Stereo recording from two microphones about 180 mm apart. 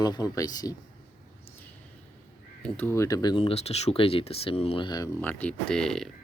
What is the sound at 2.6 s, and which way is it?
Speech, 10° left (ahead or behind).